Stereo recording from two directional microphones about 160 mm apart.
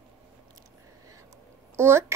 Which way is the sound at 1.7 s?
15° right (ahead or behind).